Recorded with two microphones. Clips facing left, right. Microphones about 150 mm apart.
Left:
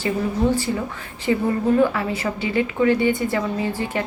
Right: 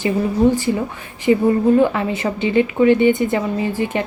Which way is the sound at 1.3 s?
20° right (ahead or behind).